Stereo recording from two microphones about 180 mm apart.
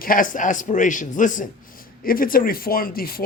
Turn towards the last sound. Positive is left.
turn(degrees=55)  # may be behind; listen again after turning